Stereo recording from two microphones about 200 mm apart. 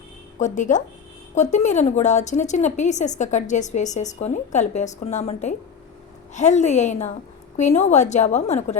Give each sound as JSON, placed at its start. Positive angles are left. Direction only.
{"t": 0.3, "sound": "speech", "side_deg": 40}